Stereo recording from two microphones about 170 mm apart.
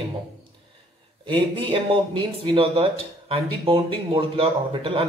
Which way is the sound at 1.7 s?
30° right (ahead or behind).